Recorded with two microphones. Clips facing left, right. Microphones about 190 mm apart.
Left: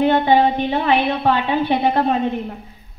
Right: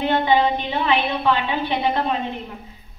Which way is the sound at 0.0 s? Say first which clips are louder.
Left 4 dB; 45° left (ahead or behind).